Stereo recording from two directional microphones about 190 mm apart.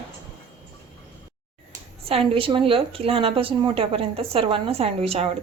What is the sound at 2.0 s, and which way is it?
A woman's voice, 30° right (ahead or behind).